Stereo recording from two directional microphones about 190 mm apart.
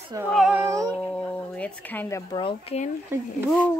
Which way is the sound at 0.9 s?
5° left (ahead or behind).